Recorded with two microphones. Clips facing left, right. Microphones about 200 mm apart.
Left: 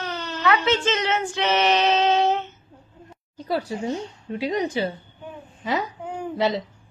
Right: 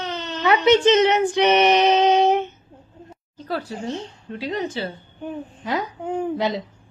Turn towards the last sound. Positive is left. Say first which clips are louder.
# left 1 dB
turn(degrees=0)  # may be behind; listen again after turning